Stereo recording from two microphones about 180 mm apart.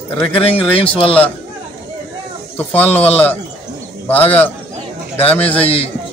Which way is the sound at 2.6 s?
10° left (ahead or behind).